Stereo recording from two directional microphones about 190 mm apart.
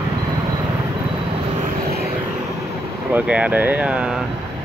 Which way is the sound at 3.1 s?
5° right (ahead or behind).